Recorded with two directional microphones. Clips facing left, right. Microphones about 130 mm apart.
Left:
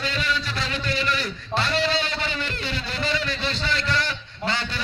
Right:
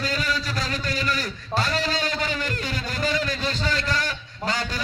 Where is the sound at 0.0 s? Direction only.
40° right (ahead or behind).